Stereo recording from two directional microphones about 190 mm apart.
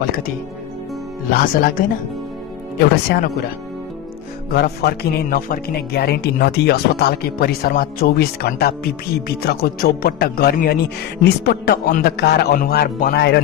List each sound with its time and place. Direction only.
1.3 s speech: 50° left (ahead or behind)
3.1 s speech: 60° left (ahead or behind)
4.5 s speech: 55° left (ahead or behind)